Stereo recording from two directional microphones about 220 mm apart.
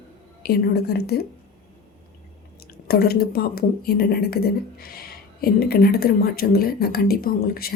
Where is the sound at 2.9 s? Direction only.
45° left (ahead or behind).